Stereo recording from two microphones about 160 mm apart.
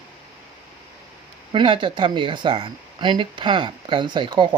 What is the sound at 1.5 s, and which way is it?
Speech, 30° right (ahead or behind).